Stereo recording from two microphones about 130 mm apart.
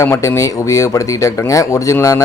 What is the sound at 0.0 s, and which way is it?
Speech, 20° left (ahead or behind).